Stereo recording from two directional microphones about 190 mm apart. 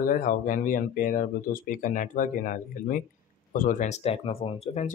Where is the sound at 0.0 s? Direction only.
45° left (ahead or behind).